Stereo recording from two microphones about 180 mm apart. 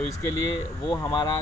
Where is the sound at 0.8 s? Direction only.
20° left (ahead or behind).